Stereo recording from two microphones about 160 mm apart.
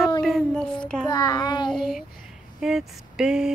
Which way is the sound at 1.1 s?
25° left (ahead or behind).